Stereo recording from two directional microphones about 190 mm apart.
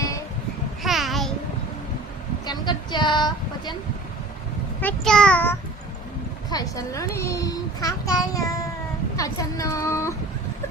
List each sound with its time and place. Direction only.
0.8 s babbling: centre (ahead or behind)
2.5 s speech: 25° left (ahead or behind)
4.8 s a child's voice: 5° left (ahead or behind)
6.5 s a child's voice: 20° left (ahead or behind)